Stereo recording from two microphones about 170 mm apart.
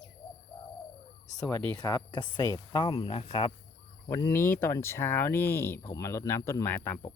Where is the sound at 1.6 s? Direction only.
20° left (ahead or behind).